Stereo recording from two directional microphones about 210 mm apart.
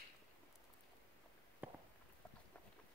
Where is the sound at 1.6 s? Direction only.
10° right (ahead or behind).